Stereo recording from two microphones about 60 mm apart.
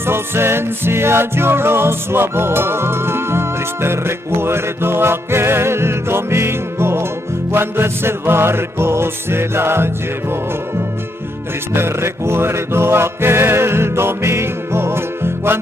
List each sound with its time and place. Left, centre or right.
0.0 s music: right
11.7 s music: right